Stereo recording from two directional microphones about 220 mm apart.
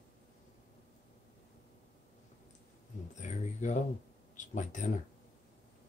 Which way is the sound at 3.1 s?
35° left (ahead or behind).